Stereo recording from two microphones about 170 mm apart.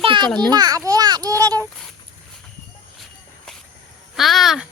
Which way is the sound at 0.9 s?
25° right (ahead or behind).